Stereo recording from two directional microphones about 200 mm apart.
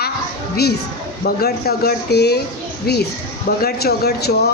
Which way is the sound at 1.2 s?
50° left (ahead or behind).